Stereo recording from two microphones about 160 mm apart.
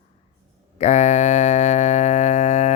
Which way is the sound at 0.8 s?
45° left (ahead or behind).